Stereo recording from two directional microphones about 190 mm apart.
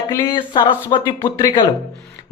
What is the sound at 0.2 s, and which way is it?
A man's voice, 20° left (ahead or behind).